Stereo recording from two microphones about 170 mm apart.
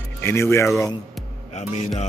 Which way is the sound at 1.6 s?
40° left (ahead or behind).